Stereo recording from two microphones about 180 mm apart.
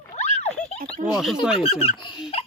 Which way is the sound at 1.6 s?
30° left (ahead or behind).